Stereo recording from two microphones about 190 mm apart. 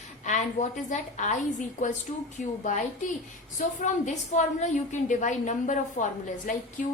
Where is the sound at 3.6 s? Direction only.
40° left (ahead or behind).